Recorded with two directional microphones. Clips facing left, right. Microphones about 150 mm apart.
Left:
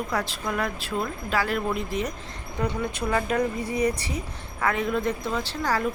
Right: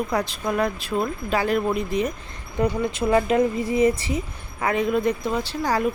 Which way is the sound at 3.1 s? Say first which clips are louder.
Right 6 dB; 20° right (ahead or behind).